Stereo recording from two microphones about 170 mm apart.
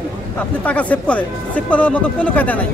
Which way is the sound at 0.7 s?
10° left (ahead or behind).